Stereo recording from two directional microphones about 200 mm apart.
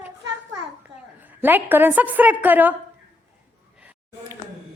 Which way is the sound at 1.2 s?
10° right (ahead or behind).